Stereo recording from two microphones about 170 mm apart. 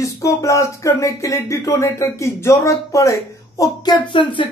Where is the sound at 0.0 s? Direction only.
20° left (ahead or behind).